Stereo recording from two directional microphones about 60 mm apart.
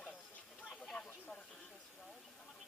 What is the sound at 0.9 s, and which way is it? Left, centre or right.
Hiss, left.